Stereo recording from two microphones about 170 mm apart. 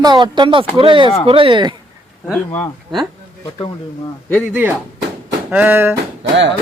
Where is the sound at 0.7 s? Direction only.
30° right (ahead or behind).